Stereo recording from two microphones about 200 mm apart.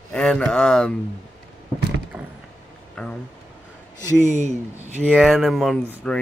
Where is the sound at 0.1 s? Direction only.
5° left (ahead or behind).